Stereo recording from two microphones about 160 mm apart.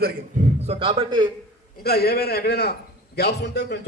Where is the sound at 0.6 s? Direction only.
40° right (ahead or behind).